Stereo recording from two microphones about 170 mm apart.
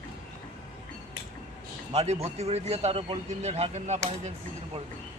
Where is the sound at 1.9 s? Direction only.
35° right (ahead or behind).